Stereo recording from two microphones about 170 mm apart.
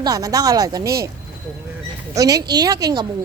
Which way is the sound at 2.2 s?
20° right (ahead or behind).